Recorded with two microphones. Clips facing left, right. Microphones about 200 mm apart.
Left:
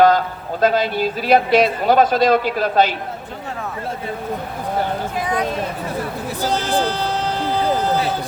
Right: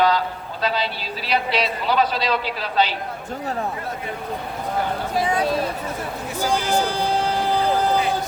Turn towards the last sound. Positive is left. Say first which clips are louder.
# left 1 dB
turn(degrees=-10)  # may be behind; listen again after turning